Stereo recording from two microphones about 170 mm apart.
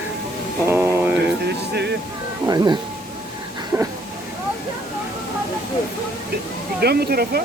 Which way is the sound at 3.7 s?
15° right (ahead or behind).